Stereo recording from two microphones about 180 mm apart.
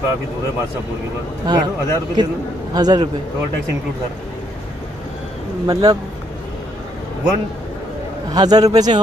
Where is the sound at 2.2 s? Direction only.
25° right (ahead or behind).